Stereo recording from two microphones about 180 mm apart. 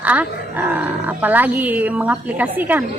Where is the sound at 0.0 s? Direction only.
10° right (ahead or behind).